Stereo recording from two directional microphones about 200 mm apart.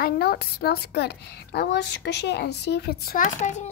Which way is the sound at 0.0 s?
50° left (ahead or behind).